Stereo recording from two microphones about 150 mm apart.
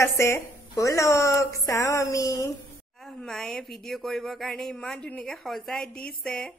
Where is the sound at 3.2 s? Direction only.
5° left (ahead or behind).